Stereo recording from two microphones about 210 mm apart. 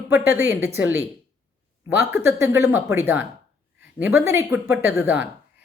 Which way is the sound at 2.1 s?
10° right (ahead or behind).